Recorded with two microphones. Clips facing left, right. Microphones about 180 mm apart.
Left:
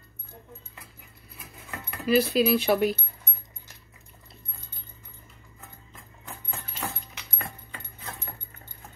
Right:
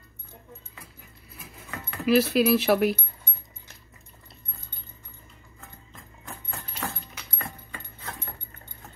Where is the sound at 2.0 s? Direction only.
5° right (ahead or behind).